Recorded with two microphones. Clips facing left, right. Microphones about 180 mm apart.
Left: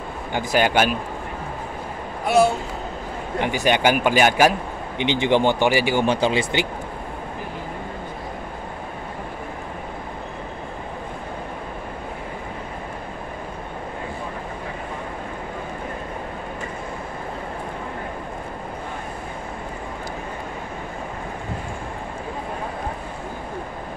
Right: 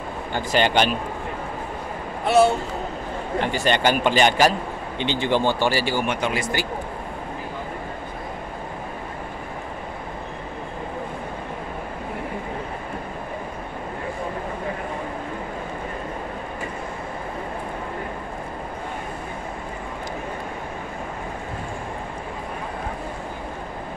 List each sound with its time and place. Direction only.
0.5 s a man's voice: 5° left (ahead or behind)
3.3 s a man's voice: 15° left (ahead or behind)
6.0 s speech: 30° left (ahead or behind)